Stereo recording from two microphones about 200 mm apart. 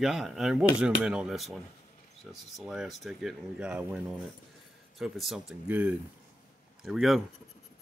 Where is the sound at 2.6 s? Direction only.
Centre (ahead or behind).